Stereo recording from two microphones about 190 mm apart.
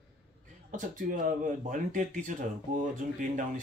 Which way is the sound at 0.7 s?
45° right (ahead or behind).